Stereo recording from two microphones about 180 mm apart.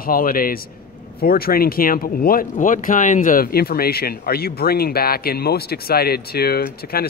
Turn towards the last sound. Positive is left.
turn(degrees=60)  # may be behind; listen again after turning